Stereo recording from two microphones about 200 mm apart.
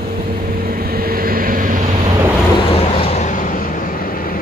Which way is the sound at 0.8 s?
50° right (ahead or behind).